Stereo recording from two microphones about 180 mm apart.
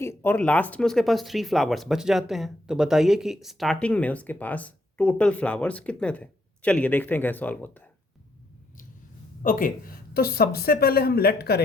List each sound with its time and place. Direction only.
0.0 s speech: 15° left (ahead or behind)
9.4 s speech: 50° left (ahead or behind)